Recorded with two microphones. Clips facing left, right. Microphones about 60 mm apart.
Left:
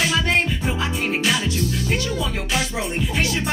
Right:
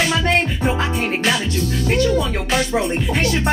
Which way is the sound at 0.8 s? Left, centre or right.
Right.